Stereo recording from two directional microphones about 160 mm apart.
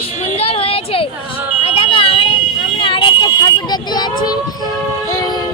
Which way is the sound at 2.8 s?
35° left (ahead or behind).